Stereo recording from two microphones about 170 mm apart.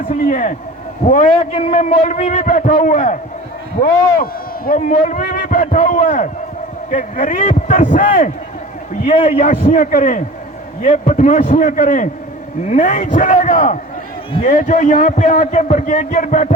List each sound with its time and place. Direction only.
0.1 s a man's voice: 50° left (ahead or behind)